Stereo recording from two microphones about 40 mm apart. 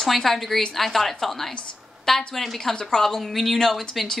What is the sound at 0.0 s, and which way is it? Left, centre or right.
A woman's voice, centre.